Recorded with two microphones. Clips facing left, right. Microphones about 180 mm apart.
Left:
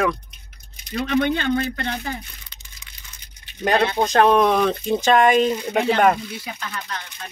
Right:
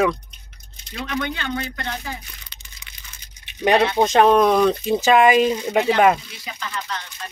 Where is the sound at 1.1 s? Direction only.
55° left (ahead or behind).